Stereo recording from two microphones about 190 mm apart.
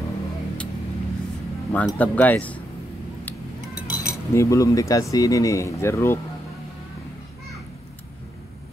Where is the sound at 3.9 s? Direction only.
15° left (ahead or behind).